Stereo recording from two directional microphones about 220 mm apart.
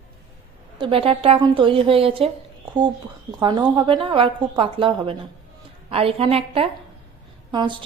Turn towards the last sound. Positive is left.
turn(degrees=-20)  # may be behind; listen again after turning